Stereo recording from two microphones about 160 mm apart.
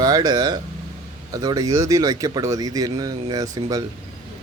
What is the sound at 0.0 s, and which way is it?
Speech, 25° right (ahead or behind).